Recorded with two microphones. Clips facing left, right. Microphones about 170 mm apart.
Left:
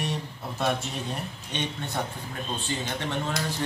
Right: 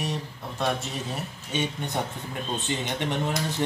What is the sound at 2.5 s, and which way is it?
Speech, 20° right (ahead or behind).